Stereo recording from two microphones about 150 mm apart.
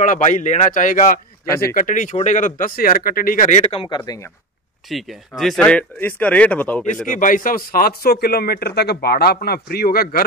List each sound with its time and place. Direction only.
0.0 s speech: 55° left (ahead or behind); by 4.0 s 40° left (ahead or behind)
4.9 s speech: centre (ahead or behind)
7.1 s speech: 65° left (ahead or behind); by 10.2 s 80° left